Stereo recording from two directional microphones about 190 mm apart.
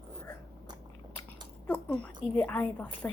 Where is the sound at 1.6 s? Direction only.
5° left (ahead or behind).